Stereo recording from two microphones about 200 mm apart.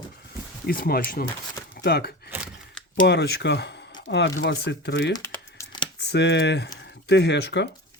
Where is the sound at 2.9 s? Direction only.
55° left (ahead or behind).